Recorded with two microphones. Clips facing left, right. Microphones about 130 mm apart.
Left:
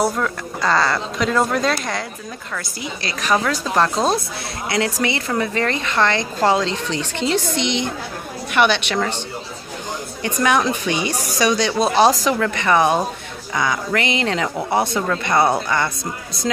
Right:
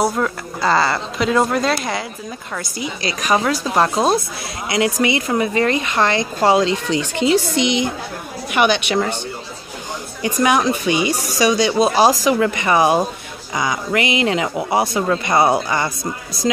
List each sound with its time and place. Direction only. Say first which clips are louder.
0.0 s speech: right 1 dB; 5° right (ahead or behind)
2.5 s speech: right 3 dB; 20° right (ahead or behind)
10.2 s speech: right 2 dB; 10° right (ahead or behind)